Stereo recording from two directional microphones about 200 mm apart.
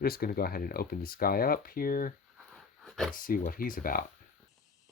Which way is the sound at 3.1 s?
45° left (ahead or behind).